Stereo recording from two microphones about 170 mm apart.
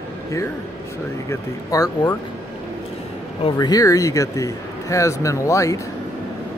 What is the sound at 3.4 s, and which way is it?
Speech, 25° left (ahead or behind).